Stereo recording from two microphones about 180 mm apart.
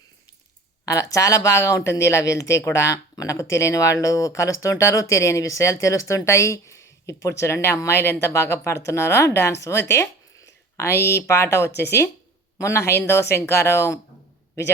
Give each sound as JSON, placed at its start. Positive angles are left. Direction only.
{"t": 1.1, "sound": "speech", "side_deg": 20}